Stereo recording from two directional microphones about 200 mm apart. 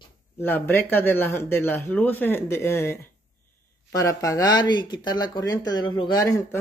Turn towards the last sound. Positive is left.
turn(degrees=15)  # may be behind; listen again after turning